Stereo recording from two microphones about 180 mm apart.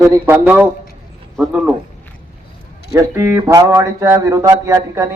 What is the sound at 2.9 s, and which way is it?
Speech, 15° right (ahead or behind).